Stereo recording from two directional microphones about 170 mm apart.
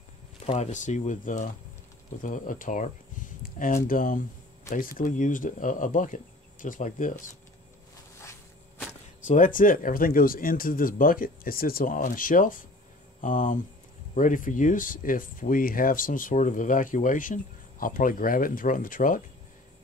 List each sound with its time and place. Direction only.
0.5 s speech: 45° left (ahead or behind)
8.2 s walk: 15° left (ahead or behind)
9.2 s speech: 50° left (ahead or behind)